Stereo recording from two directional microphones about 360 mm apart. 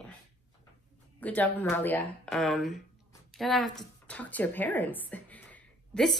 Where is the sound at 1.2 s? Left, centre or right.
Centre.